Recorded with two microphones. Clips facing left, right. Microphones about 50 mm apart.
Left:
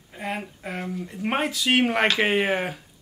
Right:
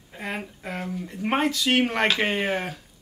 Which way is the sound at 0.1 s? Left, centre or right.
Centre.